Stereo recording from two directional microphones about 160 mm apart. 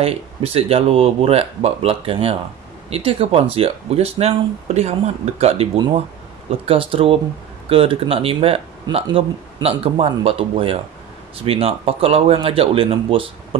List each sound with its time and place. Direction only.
0.0 s speech: 40° right (ahead or behind)